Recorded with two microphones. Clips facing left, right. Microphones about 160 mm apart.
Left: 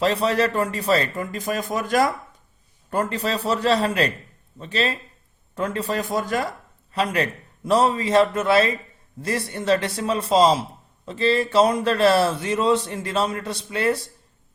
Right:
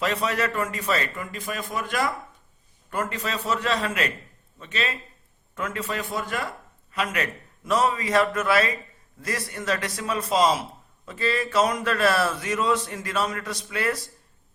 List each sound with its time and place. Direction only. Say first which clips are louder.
0.0 s a man's voice: left 5 dB; 30° left (ahead or behind)